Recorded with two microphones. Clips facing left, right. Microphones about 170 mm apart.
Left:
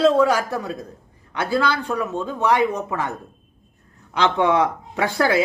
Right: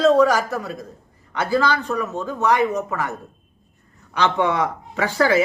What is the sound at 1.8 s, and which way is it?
A man's voice, 10° left (ahead or behind).